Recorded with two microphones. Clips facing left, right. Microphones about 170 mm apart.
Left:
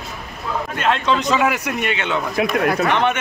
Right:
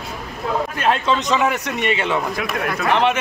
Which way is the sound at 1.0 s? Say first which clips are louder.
Left 1 dB; centre (ahead or behind).